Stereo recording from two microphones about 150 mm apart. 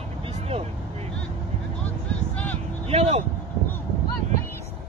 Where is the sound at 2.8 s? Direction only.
45° right (ahead or behind).